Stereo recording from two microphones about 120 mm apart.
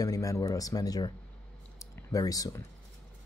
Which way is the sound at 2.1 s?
30° left (ahead or behind).